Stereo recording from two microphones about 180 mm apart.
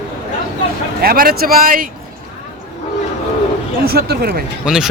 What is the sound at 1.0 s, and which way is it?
Speech, 55° right (ahead or behind).